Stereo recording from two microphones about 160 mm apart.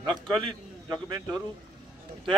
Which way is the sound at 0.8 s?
25° right (ahead or behind).